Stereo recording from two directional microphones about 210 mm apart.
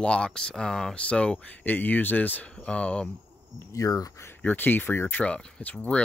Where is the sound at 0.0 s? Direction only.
5° left (ahead or behind).